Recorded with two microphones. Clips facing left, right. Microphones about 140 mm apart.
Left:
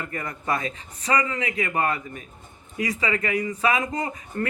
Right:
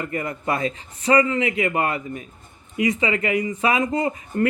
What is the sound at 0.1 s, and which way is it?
Speech, 25° right (ahead or behind).